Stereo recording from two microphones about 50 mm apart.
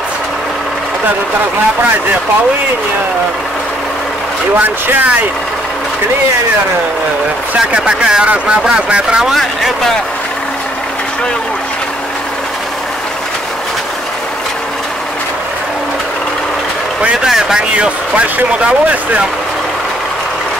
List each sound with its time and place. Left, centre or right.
7.8 s speech: centre
17.2 s speech: centre
17.6 s speech: right